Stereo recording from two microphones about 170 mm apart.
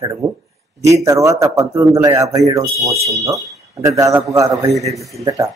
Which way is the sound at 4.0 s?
20° right (ahead or behind).